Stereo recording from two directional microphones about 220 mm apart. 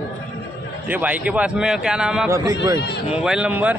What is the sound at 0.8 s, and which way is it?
Speech, 5° right (ahead or behind).